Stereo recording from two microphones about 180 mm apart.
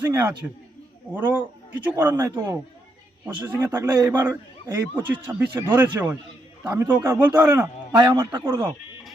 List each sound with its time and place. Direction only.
0.0 s a man's voice: 15° right (ahead or behind)
7.9 s a man's voice: 25° right (ahead or behind)